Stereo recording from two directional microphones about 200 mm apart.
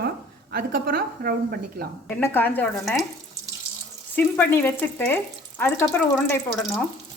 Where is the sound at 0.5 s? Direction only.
50° right (ahead or behind).